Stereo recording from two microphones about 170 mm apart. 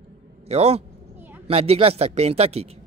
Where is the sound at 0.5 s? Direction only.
40° right (ahead or behind).